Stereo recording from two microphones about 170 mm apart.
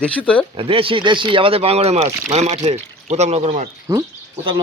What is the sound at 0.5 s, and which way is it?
Speech, 35° right (ahead or behind).